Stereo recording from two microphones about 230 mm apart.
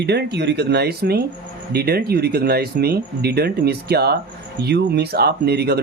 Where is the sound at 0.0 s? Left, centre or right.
Right.